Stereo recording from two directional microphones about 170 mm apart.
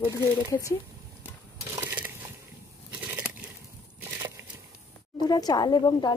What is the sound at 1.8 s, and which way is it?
Crushing, 10° right (ahead or behind).